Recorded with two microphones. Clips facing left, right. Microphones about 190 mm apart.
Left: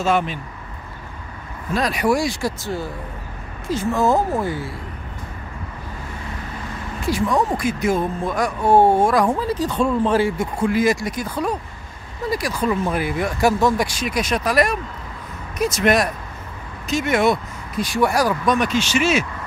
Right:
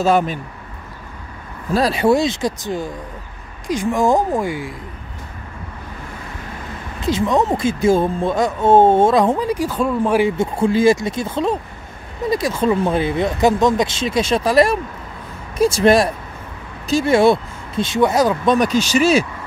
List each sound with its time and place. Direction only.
0.0 s speech: 40° right (ahead or behind)
1.7 s speech: 30° right (ahead or behind); by 4.7 s 15° right (ahead or behind)
7.0 s speech: 20° right (ahead or behind)
9.7 s speech: 5° right (ahead or behind)
10.3 s speech: 25° right (ahead or behind)
18.6 s speech: 40° right (ahead or behind)